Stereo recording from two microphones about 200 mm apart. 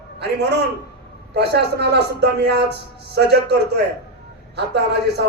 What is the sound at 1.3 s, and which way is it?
A man's voice, 55° right (ahead or behind).